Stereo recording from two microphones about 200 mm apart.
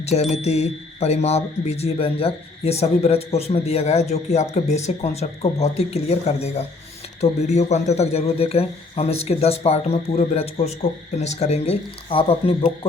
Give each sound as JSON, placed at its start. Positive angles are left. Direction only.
{"t": 0.0, "sound": "chime", "side_deg": 30}
{"t": 0.4, "sound": "speech", "side_deg": 35}